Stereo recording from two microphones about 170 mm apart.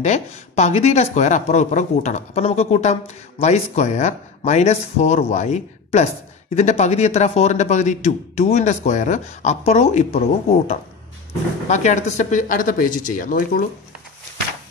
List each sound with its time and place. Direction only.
0.0 s speech: 40° left (ahead or behind)
11.6 s speech: 45° left (ahead or behind)